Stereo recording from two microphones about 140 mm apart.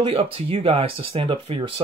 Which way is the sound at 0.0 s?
40° right (ahead or behind).